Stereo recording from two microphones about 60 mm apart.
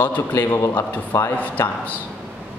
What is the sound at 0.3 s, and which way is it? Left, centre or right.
Speech, left.